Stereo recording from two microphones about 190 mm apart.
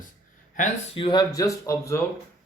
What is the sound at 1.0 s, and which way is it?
Speech, 25° left (ahead or behind).